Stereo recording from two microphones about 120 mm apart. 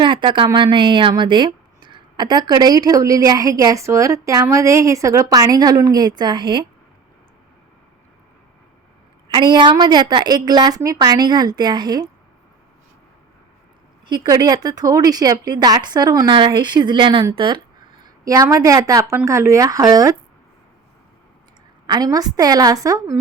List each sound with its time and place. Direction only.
0.0 s a woman's voice: 40° right (ahead or behind)
9.3 s a woman's voice: 40° right (ahead or behind)
14.1 s a woman's voice: 30° right (ahead or behind)
18.0 s speech: 30° right (ahead or behind)
21.8 s a woman's voice: 35° right (ahead or behind)